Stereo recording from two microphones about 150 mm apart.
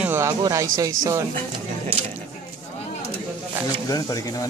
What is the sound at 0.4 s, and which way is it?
Speech, 25° right (ahead or behind).